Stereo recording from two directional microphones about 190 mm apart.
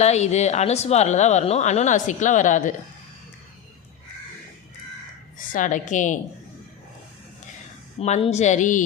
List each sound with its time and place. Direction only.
0.0 s speech: 35° left (ahead or behind)
5.4 s speech: 45° left (ahead or behind)
7.9 s speech: 35° left (ahead or behind)